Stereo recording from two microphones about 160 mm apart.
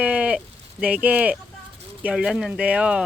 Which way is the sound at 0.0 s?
10° right (ahead or behind).